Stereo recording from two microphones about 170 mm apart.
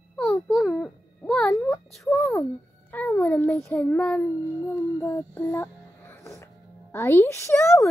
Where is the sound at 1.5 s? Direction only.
15° left (ahead or behind).